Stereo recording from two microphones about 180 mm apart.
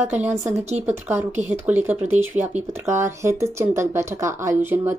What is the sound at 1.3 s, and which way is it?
Speech, 40° right (ahead or behind).